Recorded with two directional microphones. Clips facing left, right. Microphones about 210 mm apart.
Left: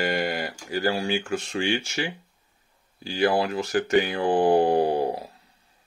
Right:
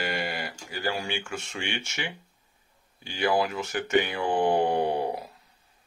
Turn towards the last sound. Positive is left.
turn(degrees=30)  # may be behind; listen again after turning